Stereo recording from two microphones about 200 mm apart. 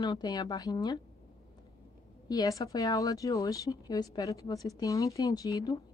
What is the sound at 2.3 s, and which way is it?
A woman's voice, 15° left (ahead or behind).